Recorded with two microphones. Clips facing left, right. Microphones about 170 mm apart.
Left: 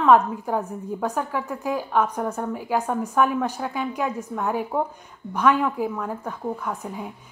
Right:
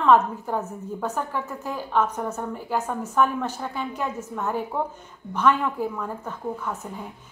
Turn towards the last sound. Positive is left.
turn(degrees=10)  # may be behind; listen again after turning